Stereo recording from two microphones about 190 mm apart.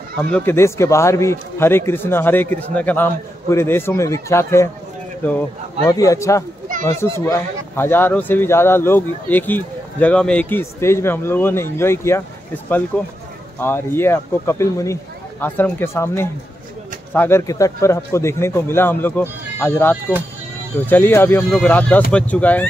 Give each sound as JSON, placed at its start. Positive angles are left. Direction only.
{"t": 0.2, "sound": "speech", "side_deg": 10}
{"t": 5.9, "sound": "speech", "side_deg": 15}